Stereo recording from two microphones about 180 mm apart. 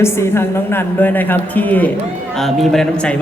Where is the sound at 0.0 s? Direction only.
15° left (ahead or behind).